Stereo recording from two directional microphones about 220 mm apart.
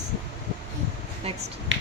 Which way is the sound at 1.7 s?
55° right (ahead or behind).